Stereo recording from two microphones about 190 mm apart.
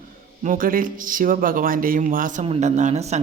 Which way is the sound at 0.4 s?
45° right (ahead or behind).